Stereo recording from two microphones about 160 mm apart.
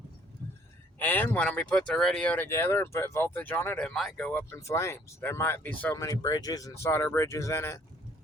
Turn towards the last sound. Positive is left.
turn(degrees=15)  # may be behind; listen again after turning